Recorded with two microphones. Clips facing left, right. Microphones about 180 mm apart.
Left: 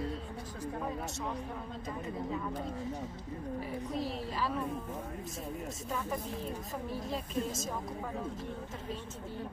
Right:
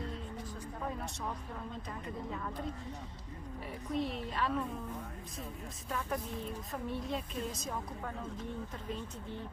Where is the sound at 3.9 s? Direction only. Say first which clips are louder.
Right 3 dB; centre (ahead or behind).